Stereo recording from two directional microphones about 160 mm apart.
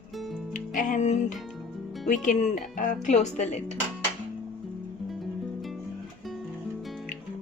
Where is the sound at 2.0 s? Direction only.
50° left (ahead or behind).